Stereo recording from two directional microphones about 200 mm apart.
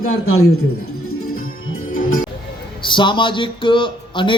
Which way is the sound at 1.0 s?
90° left.